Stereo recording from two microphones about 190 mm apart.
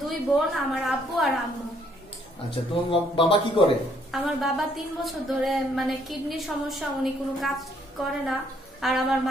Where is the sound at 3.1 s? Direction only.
25° left (ahead or behind).